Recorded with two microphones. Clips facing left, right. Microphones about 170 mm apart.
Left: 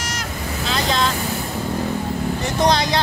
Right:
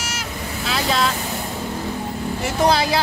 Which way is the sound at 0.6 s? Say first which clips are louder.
Even; 5° right (ahead or behind).